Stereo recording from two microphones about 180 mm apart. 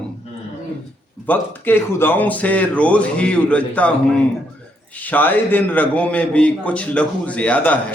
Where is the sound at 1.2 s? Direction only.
10° left (ahead or behind).